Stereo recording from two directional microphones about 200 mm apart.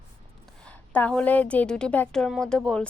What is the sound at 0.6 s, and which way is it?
A woman's voice, 5° left (ahead or behind).